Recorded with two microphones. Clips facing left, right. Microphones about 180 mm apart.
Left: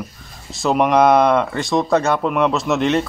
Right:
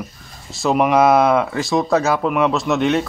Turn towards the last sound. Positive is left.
turn(degrees=0)  # may be behind; listen again after turning